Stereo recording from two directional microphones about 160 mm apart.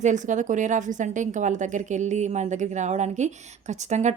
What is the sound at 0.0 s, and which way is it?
A woman's voice, 50° right (ahead or behind).